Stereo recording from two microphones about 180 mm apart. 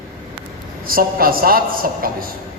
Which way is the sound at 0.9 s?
55° right (ahead or behind).